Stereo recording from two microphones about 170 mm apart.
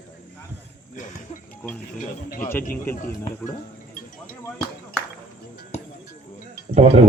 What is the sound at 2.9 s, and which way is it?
Speech, 55° left (ahead or behind).